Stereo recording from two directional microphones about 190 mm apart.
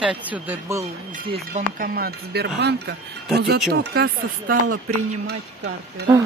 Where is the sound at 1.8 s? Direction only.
55° right (ahead or behind).